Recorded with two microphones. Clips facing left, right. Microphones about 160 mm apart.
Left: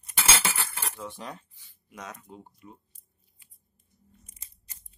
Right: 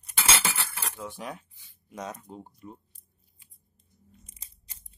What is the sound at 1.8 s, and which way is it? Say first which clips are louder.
Speech: right 5 dB; 30° right (ahead or behind).